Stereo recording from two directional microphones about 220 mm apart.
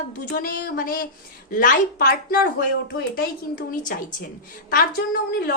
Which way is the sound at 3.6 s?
35° left (ahead or behind).